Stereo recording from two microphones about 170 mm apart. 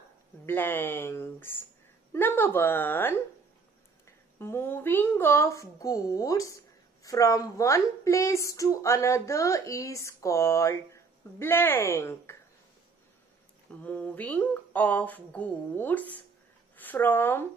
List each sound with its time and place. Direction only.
0.5 s a woman's voice: 10° left (ahead or behind)
4.4 s a woman's voice: 15° left (ahead or behind)
13.7 s a woman's voice: 10° left (ahead or behind)